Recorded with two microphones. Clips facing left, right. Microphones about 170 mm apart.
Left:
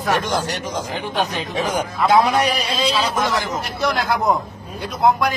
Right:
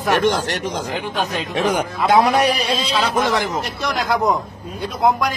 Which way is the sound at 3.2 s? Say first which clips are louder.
Right 2 dB; 60° right (ahead or behind).